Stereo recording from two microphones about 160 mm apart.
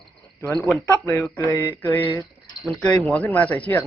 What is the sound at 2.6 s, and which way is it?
Speech, 5° left (ahead or behind).